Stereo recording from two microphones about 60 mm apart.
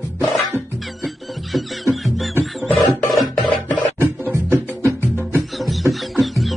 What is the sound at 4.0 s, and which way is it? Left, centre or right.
Music, right.